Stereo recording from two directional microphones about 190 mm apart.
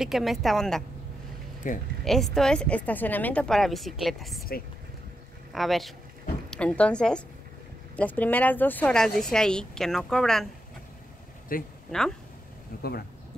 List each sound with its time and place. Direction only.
0.0 s speech: centre (ahead or behind)
1.6 s speech: 45° left (ahead or behind)
2.0 s speech: centre (ahead or behind)
5.5 s a man's voice: centre (ahead or behind)
11.5 s speech: 50° left (ahead or behind)
11.9 s speech: 5° left (ahead or behind)
12.7 s speech: 50° left (ahead or behind)